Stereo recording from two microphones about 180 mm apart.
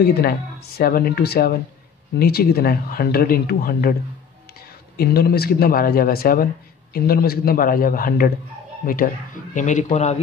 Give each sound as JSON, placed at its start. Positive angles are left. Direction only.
{"t": 0.0, "sound": "speech", "side_deg": 60}
{"t": 4.9, "sound": "speech", "side_deg": 60}